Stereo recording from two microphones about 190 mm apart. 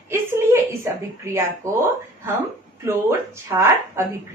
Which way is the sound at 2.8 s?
15° right (ahead or behind).